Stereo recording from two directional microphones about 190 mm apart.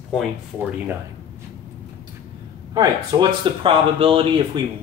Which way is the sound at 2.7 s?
20° right (ahead or behind).